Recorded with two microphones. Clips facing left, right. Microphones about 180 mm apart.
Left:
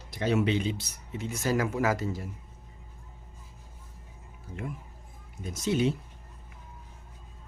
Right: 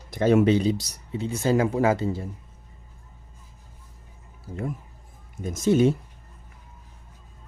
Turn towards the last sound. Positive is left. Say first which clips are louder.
# right 7 dB
turn(degrees=-45)  # may be behind; listen again after turning